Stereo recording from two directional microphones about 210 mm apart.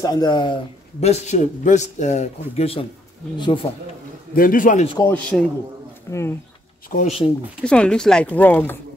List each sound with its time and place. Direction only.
0.0 s speech: 20° left (ahead or behind)
1.0 s a man's voice: 30° left (ahead or behind)
4.4 s a man's voice: 40° left (ahead or behind)
4.8 s speech: 20° left (ahead or behind)
6.9 s a man's voice: 40° left (ahead or behind)
7.6 s speech: 5° left (ahead or behind)